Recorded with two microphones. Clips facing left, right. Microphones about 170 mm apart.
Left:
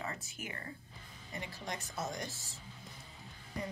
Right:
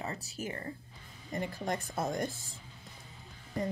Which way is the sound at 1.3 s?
50° right (ahead or behind).